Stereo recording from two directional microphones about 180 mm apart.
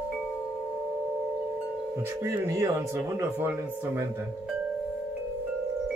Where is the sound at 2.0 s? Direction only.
15° right (ahead or behind).